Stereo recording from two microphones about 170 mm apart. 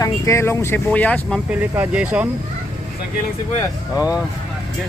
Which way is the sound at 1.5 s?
10° right (ahead or behind).